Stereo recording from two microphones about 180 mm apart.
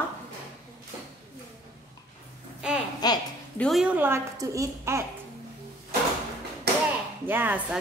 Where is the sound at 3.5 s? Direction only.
Centre (ahead or behind); by 5.0 s 15° right (ahead or behind).